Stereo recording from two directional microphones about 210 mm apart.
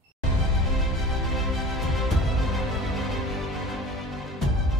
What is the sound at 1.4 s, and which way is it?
Music, centre (ahead or behind).